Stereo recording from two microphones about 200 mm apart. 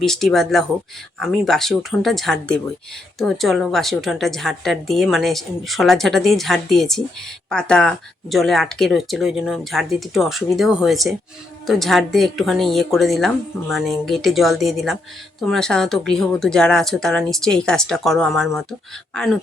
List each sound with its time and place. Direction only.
0.0 s a woman's voice: centre (ahead or behind)